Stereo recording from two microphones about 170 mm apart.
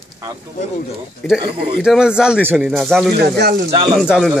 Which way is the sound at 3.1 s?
70° right (ahead or behind).